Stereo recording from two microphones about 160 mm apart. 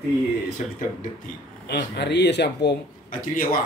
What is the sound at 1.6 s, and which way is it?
Speech, 90° left.